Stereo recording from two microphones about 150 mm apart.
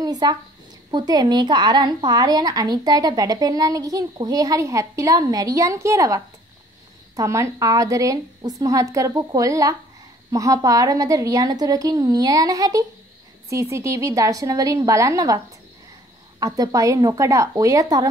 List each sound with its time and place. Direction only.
0.0 s a woman's voice: 25° right (ahead or behind)